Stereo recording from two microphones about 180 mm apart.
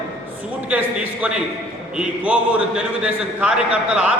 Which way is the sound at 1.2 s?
10° right (ahead or behind).